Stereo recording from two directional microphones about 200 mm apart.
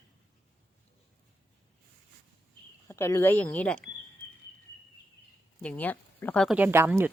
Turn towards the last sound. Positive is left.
turn(degrees=-10)  # may be behind; listen again after turning